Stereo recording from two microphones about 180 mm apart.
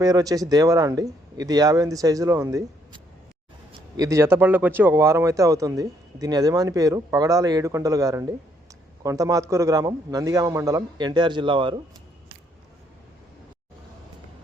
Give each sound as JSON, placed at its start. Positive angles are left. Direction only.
{"t": 0.0, "sound": "speech", "side_deg": -20}